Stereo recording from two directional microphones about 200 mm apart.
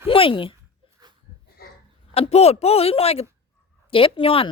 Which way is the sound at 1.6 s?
50° left (ahead or behind).